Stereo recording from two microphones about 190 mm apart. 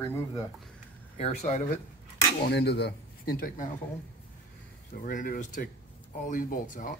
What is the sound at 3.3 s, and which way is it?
Speech, 50° left (ahead or behind).